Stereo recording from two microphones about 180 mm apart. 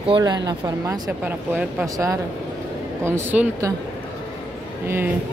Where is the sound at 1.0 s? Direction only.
5° right (ahead or behind).